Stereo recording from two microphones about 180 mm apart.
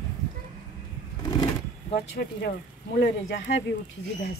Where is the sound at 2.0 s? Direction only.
60° left (ahead or behind).